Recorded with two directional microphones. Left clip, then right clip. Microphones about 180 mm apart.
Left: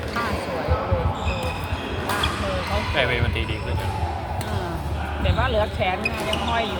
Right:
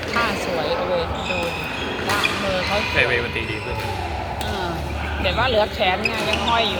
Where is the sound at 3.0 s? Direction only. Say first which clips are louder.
Right 2 dB; 60° left (ahead or behind).